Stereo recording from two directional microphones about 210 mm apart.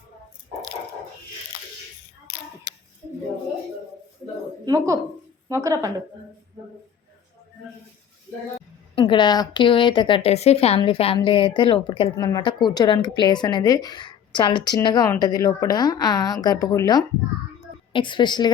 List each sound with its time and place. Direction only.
4.6 s speech: 20° right (ahead or behind)
9.0 s speech: 25° left (ahead or behind)